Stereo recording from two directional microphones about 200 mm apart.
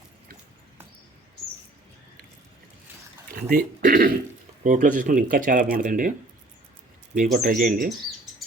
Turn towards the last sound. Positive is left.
turn(degrees=-45)  # may be behind; listen again after turning